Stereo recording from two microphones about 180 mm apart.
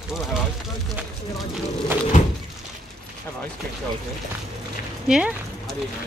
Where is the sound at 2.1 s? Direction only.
45° left (ahead or behind).